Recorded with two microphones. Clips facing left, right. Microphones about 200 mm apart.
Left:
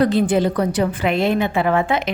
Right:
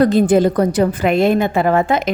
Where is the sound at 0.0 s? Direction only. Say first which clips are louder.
Right 4 dB; 45° right (ahead or behind).